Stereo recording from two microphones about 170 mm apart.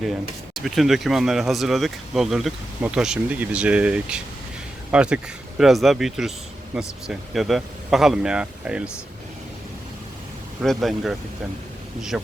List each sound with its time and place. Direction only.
0.0 s speech: centre (ahead or behind)
10.6 s speech: centre (ahead or behind)